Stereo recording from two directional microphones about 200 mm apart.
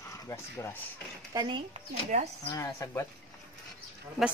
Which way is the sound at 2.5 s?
15° left (ahead or behind).